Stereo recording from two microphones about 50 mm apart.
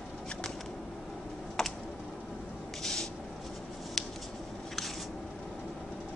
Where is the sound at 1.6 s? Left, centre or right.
Centre.